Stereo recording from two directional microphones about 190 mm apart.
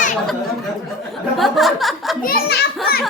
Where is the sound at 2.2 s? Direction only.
55° left (ahead or behind).